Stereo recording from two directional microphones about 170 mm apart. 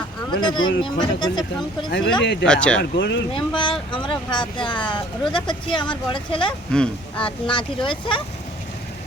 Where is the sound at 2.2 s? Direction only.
90° left.